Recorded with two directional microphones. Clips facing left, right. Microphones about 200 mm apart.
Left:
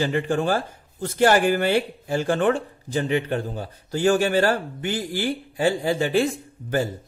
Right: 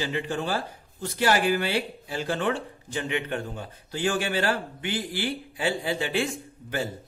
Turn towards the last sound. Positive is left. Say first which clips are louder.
# left 7 dB
turn(degrees=40)  # may be behind; listen again after turning